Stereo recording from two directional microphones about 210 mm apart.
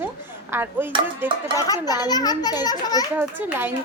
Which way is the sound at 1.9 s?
20° left (ahead or behind).